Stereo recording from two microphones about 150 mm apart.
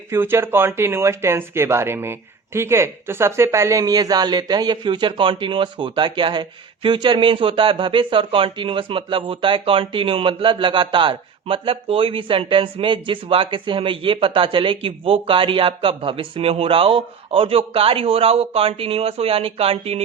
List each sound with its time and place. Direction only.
0.1 s speech: 15° right (ahead or behind); by 20.0 s 40° right (ahead or behind)